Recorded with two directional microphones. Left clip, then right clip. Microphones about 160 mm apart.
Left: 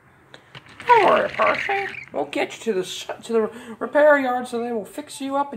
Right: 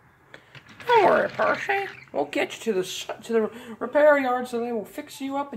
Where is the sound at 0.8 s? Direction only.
25° right (ahead or behind).